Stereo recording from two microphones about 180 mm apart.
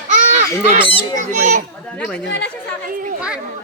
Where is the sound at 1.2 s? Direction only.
45° right (ahead or behind).